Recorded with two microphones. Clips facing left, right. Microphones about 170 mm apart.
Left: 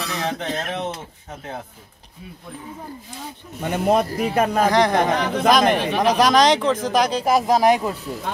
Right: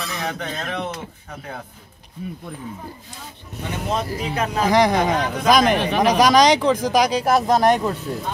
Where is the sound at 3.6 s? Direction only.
55° left (ahead or behind).